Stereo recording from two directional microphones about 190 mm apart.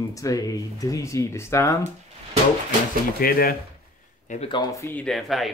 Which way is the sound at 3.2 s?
50° left (ahead or behind).